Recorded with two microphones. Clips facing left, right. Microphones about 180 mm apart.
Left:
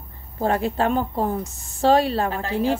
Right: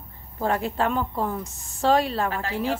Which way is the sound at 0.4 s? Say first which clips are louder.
Left 3 dB; 30° left (ahead or behind).